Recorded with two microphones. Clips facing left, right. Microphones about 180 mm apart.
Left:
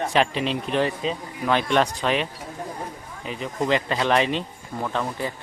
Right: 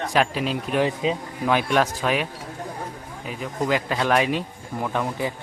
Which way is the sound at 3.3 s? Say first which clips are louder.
Left 1 dB; 5° right (ahead or behind).